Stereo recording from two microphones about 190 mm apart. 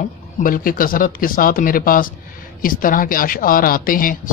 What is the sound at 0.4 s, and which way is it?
Speech, 45° left (ahead or behind).